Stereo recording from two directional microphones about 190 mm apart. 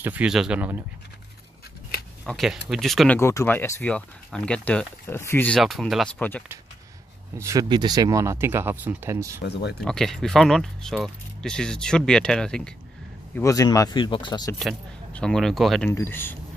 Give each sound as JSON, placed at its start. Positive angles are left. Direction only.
{"t": 0.0, "sound": "speech", "side_deg": -5}
{"t": 2.2, "sound": "speech", "side_deg": 0}
{"t": 3.2, "sound": "speech", "side_deg": 15}
{"t": 7.3, "sound": "speech", "side_deg": -15}
{"t": 9.4, "sound": "speech", "side_deg": 60}
{"t": 9.8, "sound": "speech", "side_deg": 5}
{"t": 13.4, "sound": "speech", "side_deg": 15}
{"t": 14.6, "sound": "speech", "side_deg": 0}
{"t": 15.9, "sound": "speech", "side_deg": 10}